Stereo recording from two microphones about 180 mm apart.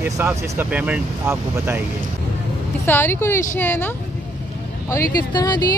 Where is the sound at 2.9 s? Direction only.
10° left (ahead or behind).